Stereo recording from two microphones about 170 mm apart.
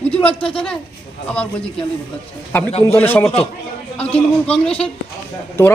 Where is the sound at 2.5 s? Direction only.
10° left (ahead or behind).